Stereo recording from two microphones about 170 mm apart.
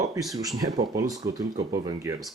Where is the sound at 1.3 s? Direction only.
15° right (ahead or behind).